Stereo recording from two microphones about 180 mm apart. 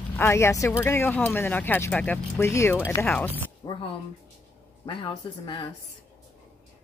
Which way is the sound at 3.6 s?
25° left (ahead or behind).